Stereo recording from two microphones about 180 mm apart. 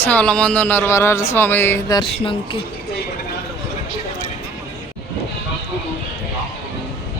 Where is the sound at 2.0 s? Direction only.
30° left (ahead or behind).